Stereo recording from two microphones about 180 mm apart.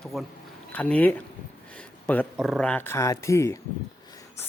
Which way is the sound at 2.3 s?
Centre (ahead or behind).